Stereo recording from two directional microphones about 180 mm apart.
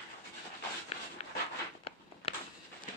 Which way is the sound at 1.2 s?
35° left (ahead or behind).